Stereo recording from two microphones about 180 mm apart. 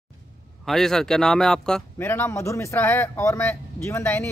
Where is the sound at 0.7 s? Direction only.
Centre (ahead or behind).